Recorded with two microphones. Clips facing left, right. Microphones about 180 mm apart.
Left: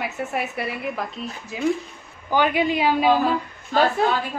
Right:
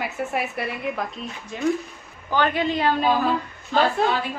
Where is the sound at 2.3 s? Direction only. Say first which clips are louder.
Left 2 dB; 10° left (ahead or behind).